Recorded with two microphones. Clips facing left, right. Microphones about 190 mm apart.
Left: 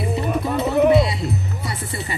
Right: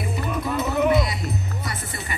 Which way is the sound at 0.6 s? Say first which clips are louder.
Left 5 dB; 30° left (ahead or behind).